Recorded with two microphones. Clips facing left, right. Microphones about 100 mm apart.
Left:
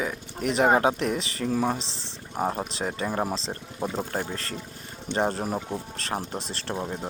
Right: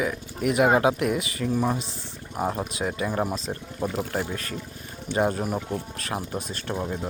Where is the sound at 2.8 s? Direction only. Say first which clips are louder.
Right 2 dB; 40° left (ahead or behind).